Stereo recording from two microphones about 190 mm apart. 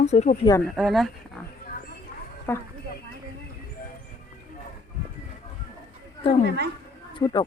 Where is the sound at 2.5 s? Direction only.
10° left (ahead or behind).